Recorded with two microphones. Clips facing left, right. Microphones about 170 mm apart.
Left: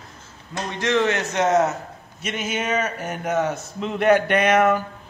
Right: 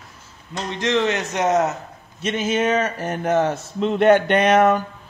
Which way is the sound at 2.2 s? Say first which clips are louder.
Right 6 dB; 25° right (ahead or behind).